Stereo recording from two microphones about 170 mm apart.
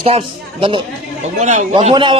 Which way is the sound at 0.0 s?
35° right (ahead or behind).